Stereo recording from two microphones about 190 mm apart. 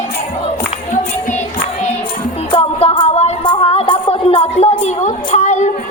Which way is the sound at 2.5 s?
30° left (ahead or behind).